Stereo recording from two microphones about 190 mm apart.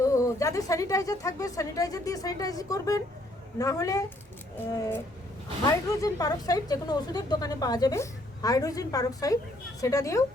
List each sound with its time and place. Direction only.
0.0 s a woman's voice: 15° left (ahead or behind)